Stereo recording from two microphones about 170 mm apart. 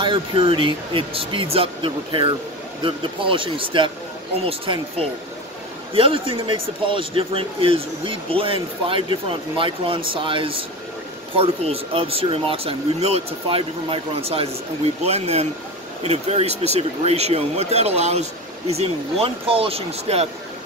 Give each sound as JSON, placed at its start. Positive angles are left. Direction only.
{"t": 0.0, "sound": "a man's voice", "side_deg": -30}